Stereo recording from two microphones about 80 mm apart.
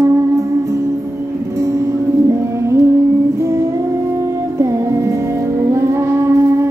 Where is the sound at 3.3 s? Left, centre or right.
Right.